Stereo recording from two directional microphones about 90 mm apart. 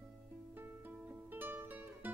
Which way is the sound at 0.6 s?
20° right (ahead or behind).